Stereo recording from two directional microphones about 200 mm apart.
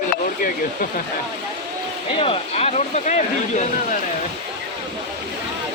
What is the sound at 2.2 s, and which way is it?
Speech, 30° left (ahead or behind).